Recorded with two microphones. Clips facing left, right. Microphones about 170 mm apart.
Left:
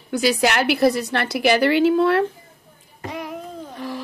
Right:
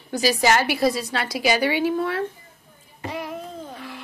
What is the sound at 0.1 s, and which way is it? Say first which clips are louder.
A woman's voice: left 1 dB; 65° left (ahead or behind).